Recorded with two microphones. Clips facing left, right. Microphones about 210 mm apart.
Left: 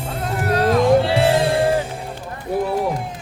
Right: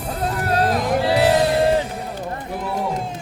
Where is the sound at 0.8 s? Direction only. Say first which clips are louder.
Left 3 dB; 25° left (ahead or behind).